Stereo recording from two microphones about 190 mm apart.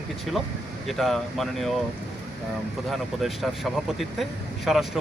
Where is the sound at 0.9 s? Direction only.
Centre (ahead or behind).